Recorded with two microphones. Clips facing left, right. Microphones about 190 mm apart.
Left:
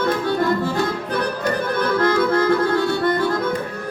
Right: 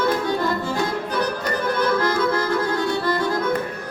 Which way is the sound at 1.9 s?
60° left (ahead or behind).